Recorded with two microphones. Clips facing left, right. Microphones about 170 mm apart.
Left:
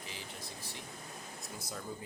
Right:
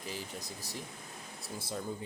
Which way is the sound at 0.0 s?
40° right (ahead or behind).